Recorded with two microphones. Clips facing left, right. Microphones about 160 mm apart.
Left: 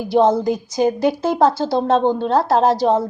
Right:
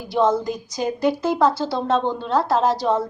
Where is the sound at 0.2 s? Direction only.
30° left (ahead or behind).